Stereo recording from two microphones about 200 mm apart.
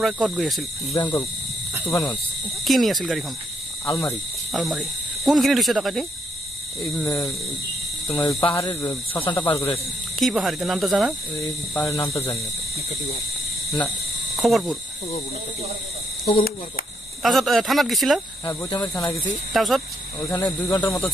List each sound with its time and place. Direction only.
0.0 s speech: centre (ahead or behind)
0.9 s speech: 20° left (ahead or behind)
2.6 s speech: centre (ahead or behind)
3.8 s speech: 15° left (ahead or behind)
4.5 s cricket: centre (ahead or behind)
7.0 s speech: 15° left (ahead or behind)
10.1 s speech: centre (ahead or behind)
11.7 s speech: 15° left (ahead or behind)
14.4 s speech: centre (ahead or behind)
16.3 s speech: 45° left (ahead or behind)
17.2 s speech: centre (ahead or behind)
18.4 s speech: 20° left (ahead or behind)
19.5 s speech: centre (ahead or behind)
20.2 s speech: 20° left (ahead or behind)